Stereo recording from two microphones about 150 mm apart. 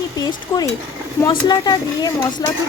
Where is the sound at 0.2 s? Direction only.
25° left (ahead or behind).